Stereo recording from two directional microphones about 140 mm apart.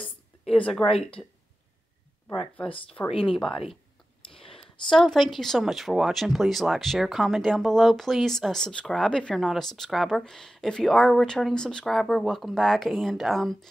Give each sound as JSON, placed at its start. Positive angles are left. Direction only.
{"t": 0.5, "sound": "speech", "side_deg": 5}
{"t": 0.8, "sound": "speech", "side_deg": 40}
{"t": 3.1, "sound": "speech", "side_deg": 40}
{"t": 4.3, "sound": "clicking", "side_deg": 40}
{"t": 4.6, "sound": "speech", "side_deg": 5}